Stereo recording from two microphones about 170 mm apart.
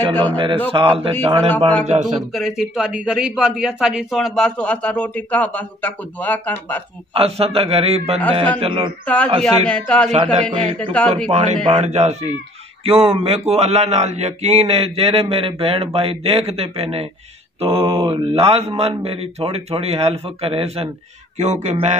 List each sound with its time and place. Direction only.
0.1 s speech: 10° left (ahead or behind)
0.7 s speech: 30° right (ahead or behind)
2.3 s speech: centre (ahead or behind)
7.2 s speech: 35° right (ahead or behind)
9.0 s speech: 10° left (ahead or behind)
10.1 s speech: 35° right (ahead or behind)
10.6 s speech: 5° left (ahead or behind)
11.3 s speech: 40° right (ahead or behind)